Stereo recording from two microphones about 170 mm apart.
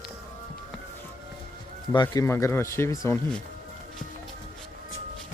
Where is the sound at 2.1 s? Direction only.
15° left (ahead or behind).